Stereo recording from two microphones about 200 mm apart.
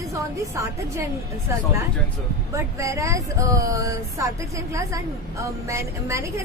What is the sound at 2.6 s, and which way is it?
Speech, 15° right (ahead or behind).